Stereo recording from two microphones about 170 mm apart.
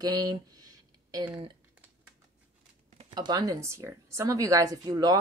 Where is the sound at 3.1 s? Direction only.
25° right (ahead or behind).